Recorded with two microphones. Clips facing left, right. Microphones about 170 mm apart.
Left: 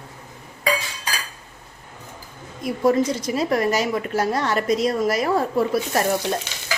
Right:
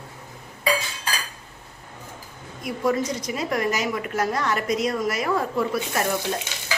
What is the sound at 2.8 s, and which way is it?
A woman's voice, 30° left (ahead or behind).